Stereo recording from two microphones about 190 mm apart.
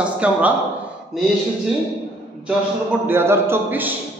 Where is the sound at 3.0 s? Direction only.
10° right (ahead or behind).